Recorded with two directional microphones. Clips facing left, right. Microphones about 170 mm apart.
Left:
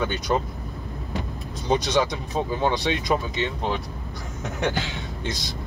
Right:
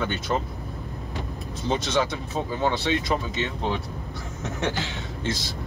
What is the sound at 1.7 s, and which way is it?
Speech, 15° left (ahead or behind).